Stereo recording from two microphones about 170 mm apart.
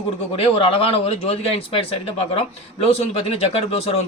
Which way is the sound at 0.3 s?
35° left (ahead or behind).